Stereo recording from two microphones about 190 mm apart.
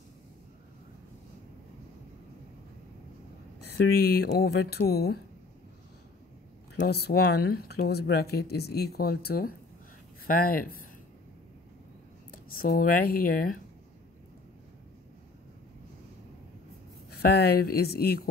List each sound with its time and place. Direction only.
3.7 s speech: 60° left (ahead or behind)
6.8 s speech: 55° left (ahead or behind)
12.3 s speech: 50° left (ahead or behind)
17.3 s speech: 55° left (ahead or behind)